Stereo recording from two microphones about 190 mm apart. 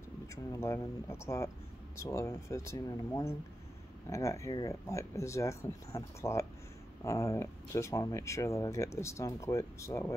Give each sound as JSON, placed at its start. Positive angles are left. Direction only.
{"t": 0.5, "sound": "speech", "side_deg": 15}